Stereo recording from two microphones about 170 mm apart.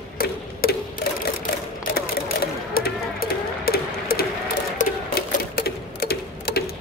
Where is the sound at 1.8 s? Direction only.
60° left (ahead or behind).